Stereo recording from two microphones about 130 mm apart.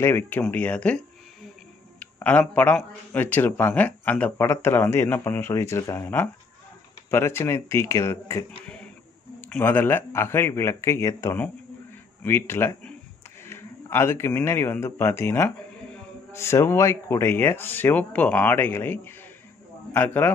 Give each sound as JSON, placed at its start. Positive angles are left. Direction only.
{"t": 0.0, "sound": "a man's voice", "side_deg": 15}